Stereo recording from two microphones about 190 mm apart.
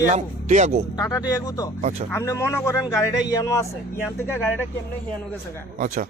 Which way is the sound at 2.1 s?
15° left (ahead or behind).